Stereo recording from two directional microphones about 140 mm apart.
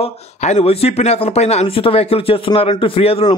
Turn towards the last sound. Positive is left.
turn(degrees=45)  # may be behind; listen again after turning